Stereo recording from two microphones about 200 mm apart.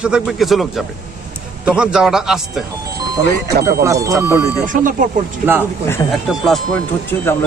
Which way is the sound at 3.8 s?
15° right (ahead or behind).